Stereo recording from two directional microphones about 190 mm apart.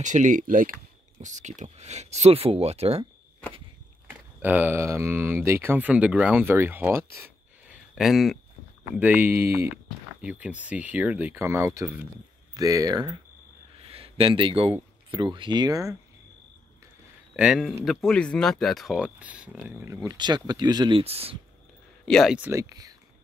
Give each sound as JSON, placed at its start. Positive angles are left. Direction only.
{"t": 0.0, "sound": "speech", "side_deg": -40}
{"t": 4.1, "sound": "speech", "side_deg": -10}
{"t": 7.7, "sound": "a sound", "side_deg": 0}
{"t": 8.9, "sound": "speech", "side_deg": -10}
{"t": 17.4, "sound": "speech", "side_deg": -5}
{"t": 22.0, "sound": "speech", "side_deg": 0}